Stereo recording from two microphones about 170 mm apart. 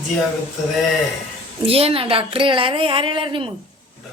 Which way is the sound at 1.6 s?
35° right (ahead or behind).